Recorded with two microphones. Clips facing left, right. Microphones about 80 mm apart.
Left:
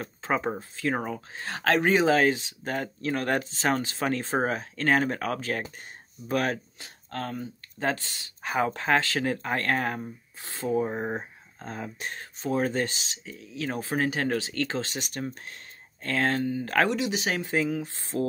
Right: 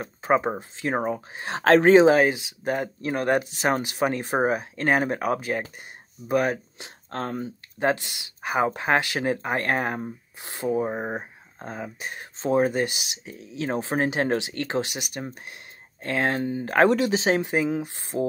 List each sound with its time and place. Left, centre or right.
0.0 s speech: centre
1.6 s speech: right
2.0 s speech: centre
7.1 s speech: right
7.9 s speech: centre
12.4 s speech: right